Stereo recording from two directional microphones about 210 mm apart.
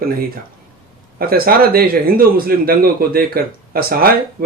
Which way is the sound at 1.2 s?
45° right (ahead or behind).